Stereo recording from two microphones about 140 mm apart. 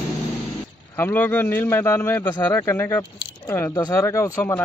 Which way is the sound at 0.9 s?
15° left (ahead or behind).